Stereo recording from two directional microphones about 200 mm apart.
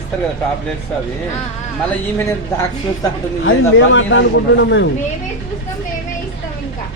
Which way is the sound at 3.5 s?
75° left (ahead or behind).